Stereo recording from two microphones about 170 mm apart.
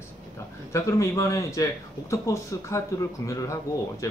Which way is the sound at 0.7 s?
15° left (ahead or behind).